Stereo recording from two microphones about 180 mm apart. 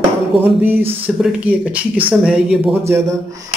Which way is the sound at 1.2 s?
10° right (ahead or behind).